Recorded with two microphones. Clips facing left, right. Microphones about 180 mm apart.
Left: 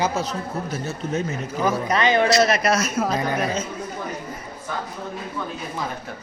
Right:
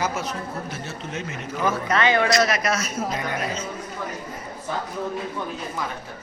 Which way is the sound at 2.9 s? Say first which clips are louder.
Left 4 dB; 65° left (ahead or behind).